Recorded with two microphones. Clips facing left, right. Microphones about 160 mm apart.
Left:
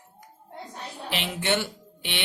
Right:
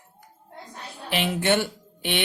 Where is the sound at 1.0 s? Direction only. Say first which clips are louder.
Right 5 dB; 50° right (ahead or behind).